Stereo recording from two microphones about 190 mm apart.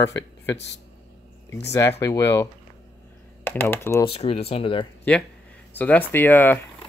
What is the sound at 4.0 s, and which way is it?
Speech, 30° left (ahead or behind).